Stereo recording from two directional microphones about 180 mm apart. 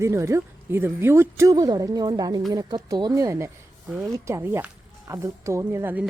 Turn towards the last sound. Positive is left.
turn(degrees=-10)  # may be behind; listen again after turning